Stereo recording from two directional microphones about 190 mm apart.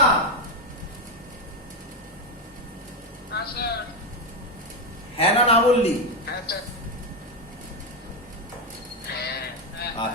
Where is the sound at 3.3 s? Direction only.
60° left (ahead or behind).